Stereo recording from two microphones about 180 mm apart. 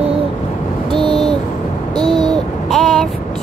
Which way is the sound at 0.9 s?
25° right (ahead or behind).